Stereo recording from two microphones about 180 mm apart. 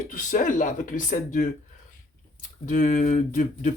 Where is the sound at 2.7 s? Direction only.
45° left (ahead or behind).